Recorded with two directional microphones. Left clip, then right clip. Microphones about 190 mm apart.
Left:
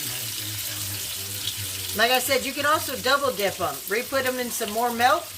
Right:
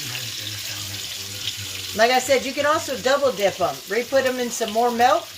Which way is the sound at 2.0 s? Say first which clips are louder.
Right 4 dB; 15° right (ahead or behind).